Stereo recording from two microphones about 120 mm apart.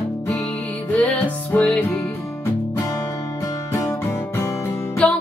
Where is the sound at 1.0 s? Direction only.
10° left (ahead or behind).